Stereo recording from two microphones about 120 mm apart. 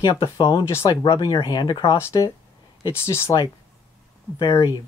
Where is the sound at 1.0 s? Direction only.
40° left (ahead or behind).